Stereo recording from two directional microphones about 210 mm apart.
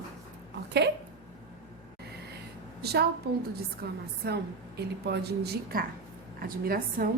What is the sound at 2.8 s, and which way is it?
A woman's voice, 50° right (ahead or behind).